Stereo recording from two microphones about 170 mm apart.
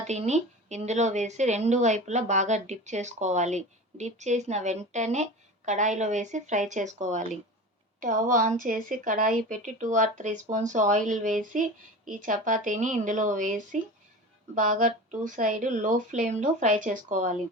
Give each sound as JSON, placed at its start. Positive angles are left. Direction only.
{"t": 0.1, "sound": "a woman's voice", "side_deg": -40}